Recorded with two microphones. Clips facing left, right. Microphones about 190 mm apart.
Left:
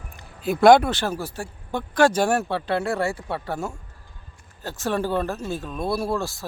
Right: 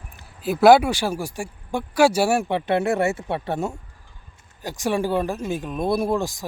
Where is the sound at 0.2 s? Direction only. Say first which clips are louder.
Right 1 dB; centre (ahead or behind).